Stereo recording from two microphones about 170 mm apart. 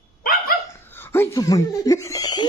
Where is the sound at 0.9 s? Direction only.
10° left (ahead or behind).